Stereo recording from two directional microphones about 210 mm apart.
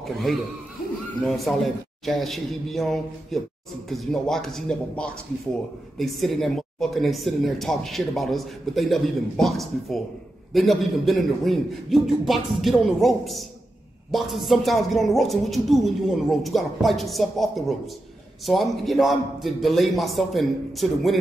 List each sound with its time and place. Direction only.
0.3 s speech: centre (ahead or behind)